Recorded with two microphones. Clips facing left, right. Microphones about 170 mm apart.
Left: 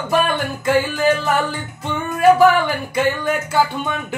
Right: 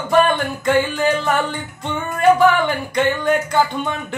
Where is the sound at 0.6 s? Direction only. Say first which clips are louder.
Left 1 dB; 5° left (ahead or behind).